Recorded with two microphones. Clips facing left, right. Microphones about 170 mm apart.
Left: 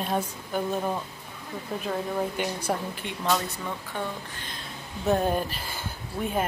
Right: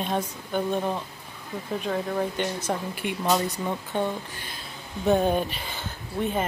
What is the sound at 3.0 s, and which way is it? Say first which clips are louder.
Speech: right 3 dB; 10° right (ahead or behind).